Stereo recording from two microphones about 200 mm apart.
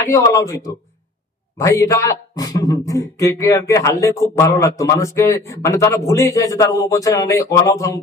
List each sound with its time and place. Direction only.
0.1 s a man's voice: 15° left (ahead or behind)